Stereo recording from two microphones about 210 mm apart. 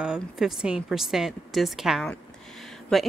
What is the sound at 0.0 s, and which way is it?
A woman's voice, 5° right (ahead or behind).